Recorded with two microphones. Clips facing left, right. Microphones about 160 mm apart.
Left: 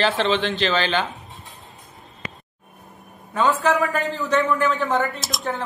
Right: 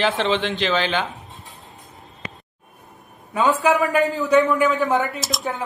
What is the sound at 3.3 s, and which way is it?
Speech, 10° right (ahead or behind).